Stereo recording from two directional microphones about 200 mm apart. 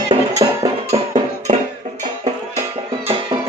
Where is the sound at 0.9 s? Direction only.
35° right (ahead or behind).